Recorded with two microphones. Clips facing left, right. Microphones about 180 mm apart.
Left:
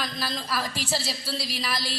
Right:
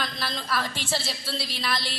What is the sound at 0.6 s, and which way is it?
Speech, 35° left (ahead or behind).